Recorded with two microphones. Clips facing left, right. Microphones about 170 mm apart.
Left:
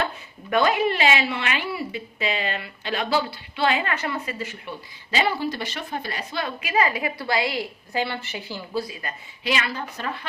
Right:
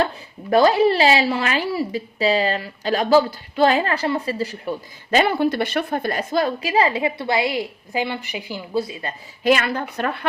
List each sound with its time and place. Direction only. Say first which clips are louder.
0.5 s a woman's voice: right 6 dB; 35° right (ahead or behind)
5.1 s a woman's voice: right 7 dB; 55° right (ahead or behind); by 9.1 s 25° right (ahead or behind)
9.4 s a woman's voice: right 8 dB; 50° right (ahead or behind)